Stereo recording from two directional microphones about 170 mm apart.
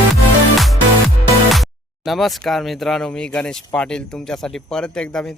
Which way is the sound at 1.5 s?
Centre (ahead or behind).